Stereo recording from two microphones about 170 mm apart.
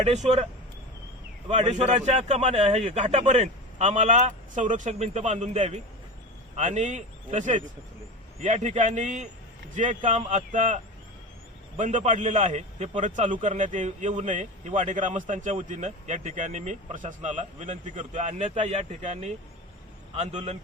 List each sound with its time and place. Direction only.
0.0 s speech: 40° right (ahead or behind)
1.5 s speech: 45° right (ahead or behind)
11.8 s speech: 45° right (ahead or behind)